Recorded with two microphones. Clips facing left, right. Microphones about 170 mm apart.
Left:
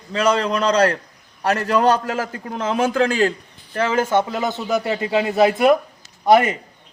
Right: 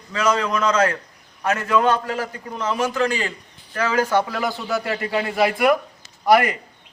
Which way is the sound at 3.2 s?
40° left (ahead or behind).